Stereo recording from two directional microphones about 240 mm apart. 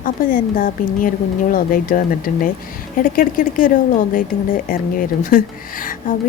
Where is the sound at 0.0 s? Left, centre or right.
Left.